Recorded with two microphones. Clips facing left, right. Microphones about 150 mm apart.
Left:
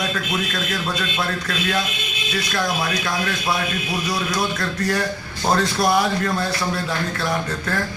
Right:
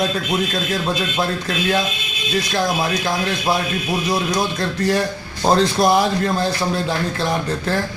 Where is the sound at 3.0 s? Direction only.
35° right (ahead or behind).